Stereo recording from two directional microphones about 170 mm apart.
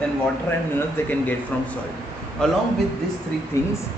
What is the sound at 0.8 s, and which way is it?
Speech, 10° left (ahead or behind).